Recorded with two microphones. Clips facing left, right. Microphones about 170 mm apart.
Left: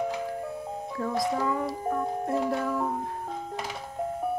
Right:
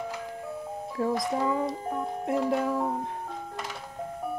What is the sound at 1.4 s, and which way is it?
Music, 20° right (ahead or behind).